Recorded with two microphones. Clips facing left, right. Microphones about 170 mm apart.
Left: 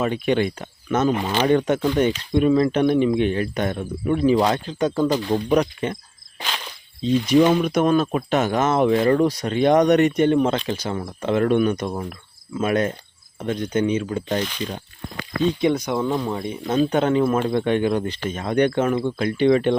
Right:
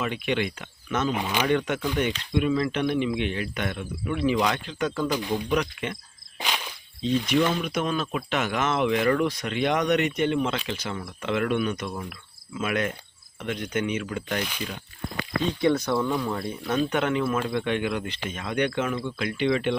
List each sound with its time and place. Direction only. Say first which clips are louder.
0.0 s speech: left 6 dB; 40° left (ahead or behind)
7.0 s speech: left 7 dB; 35° left (ahead or behind)
7.5 s speech: left 9 dB; 45° left (ahead or behind); by 14.4 s 30° left (ahead or behind)
14.4 s speech: left 5 dB; 10° right (ahead or behind)
15.6 s speech: left 2 dB; 15° left (ahead or behind)
16.7 s speech: left 6 dB; 35° left (ahead or behind)